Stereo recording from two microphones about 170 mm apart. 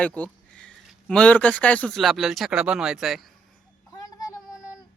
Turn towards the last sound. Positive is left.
turn(degrees=0)  # may be behind; listen again after turning